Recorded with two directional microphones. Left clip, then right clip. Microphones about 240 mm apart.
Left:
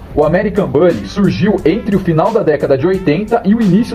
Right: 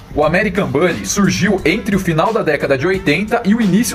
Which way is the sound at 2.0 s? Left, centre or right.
Centre.